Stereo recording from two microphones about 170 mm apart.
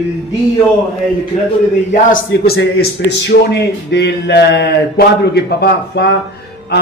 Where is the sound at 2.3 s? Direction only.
80° left.